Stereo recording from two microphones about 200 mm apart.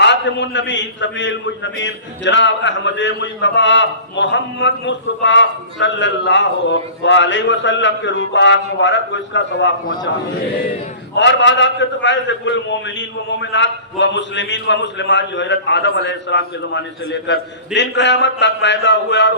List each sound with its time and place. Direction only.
0.0 s a man's voice: 60° left (ahead or behind)
11.1 s a man's voice: 65° left (ahead or behind)